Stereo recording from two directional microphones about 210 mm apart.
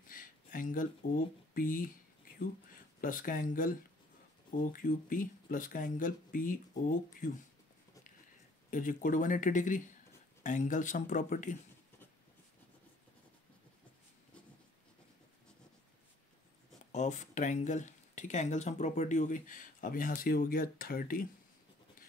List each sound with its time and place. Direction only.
0.1 s speech: 40° left (ahead or behind)
3.0 s speech: 40° left (ahead or behind)
8.6 s speech: 40° left (ahead or behind)
16.9 s speech: 35° left (ahead or behind)